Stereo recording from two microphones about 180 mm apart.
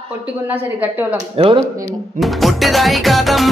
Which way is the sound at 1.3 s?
30° right (ahead or behind).